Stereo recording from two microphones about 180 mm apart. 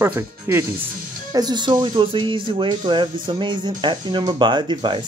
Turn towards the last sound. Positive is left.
turn(degrees=-25)  # may be behind; listen again after turning